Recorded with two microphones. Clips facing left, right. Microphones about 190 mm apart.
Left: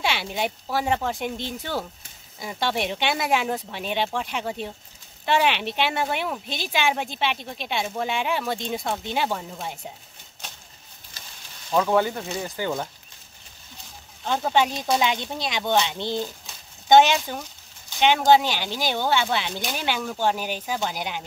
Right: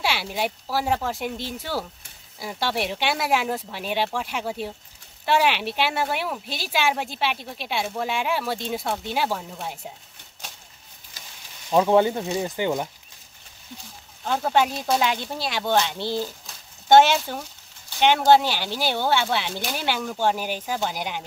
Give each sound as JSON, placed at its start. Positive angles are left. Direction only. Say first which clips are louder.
{"t": 0.0, "sound": "speech", "louder": "even", "side_deg": -5}
{"t": 11.7, "sound": "speech", "louder": "right 3 dB", "side_deg": -20}
{"t": 14.2, "sound": "speech", "louder": "even", "side_deg": -5}